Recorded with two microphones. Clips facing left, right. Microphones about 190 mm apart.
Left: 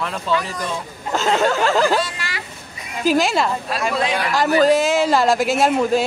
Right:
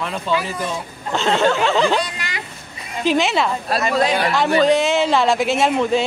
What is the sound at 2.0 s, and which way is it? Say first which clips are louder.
Vehicle: even; 20° right (ahead or behind).